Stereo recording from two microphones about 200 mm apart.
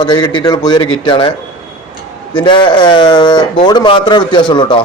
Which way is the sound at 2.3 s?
25° left (ahead or behind).